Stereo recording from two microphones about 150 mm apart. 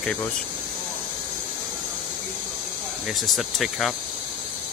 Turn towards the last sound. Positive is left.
turn(degrees=0)  # may be behind; listen again after turning